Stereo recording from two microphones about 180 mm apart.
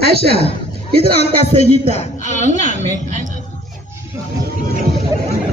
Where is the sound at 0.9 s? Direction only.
35° left (ahead or behind).